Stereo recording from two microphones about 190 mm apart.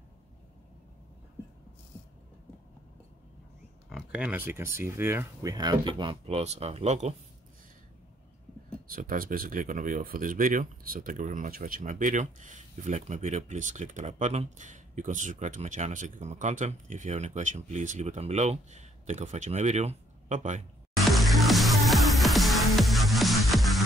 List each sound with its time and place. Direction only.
3.9 s speech: 5° right (ahead or behind); by 7.2 s 35° right (ahead or behind)
8.8 s speech: 50° right (ahead or behind)
21.0 s music: centre (ahead or behind)